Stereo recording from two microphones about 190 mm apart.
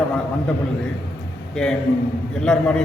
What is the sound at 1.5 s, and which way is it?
A man's voice, centre (ahead or behind).